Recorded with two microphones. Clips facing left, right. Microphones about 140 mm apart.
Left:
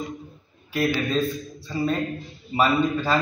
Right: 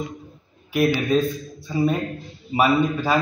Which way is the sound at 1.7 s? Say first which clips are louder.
Right 3 dB; 15° right (ahead or behind).